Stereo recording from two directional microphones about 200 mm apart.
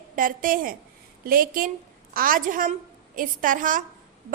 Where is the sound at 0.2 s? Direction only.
45° right (ahead or behind).